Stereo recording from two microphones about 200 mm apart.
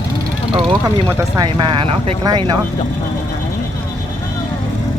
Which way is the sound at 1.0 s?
20° right (ahead or behind).